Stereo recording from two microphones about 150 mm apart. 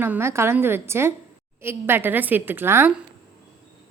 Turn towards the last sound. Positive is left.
turn(degrees=-15)  # may be behind; listen again after turning